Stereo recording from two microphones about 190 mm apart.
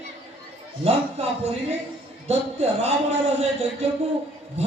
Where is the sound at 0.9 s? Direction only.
35° right (ahead or behind).